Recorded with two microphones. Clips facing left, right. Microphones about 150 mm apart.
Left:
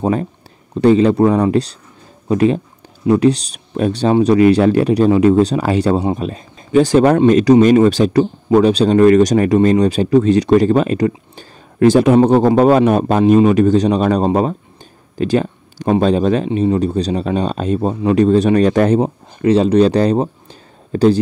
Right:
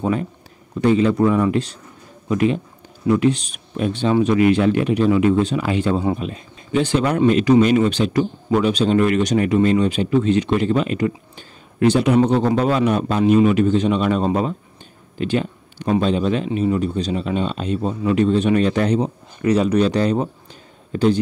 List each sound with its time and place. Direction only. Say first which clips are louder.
0.0 s a man's voice: left 4 dB; 35° left (ahead or behind)
19.4 s speech: left 5 dB; 30° left (ahead or behind)